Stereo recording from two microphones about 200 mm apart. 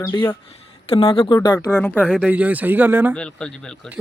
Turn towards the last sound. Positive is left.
turn(degrees=5)  # may be behind; listen again after turning